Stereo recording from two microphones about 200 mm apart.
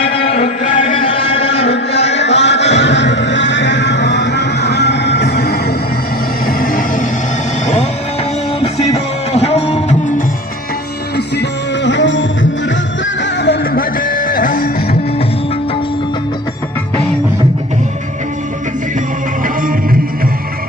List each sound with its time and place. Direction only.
0.0 s music: 30° left (ahead or behind)
0.9 s a sound: 30° left (ahead or behind)
1.9 s music: 30° left (ahead or behind)
2.1 s music: 60° left (ahead or behind); by 7.1 s 40° left (ahead or behind)
8.6 s music: 30° left (ahead or behind)
11.3 s music: 60° left (ahead or behind); by 14.9 s 45° left (ahead or behind)